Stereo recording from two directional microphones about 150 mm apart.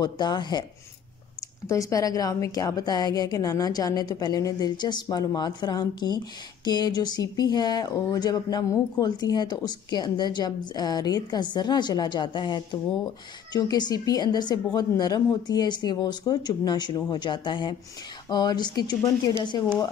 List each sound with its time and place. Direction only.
0.0 s a woman's voice: 30° left (ahead or behind)
1.7 s a woman's voice: 20° left (ahead or behind)